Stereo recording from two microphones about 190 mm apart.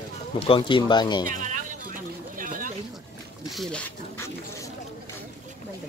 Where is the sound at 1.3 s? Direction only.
45° right (ahead or behind).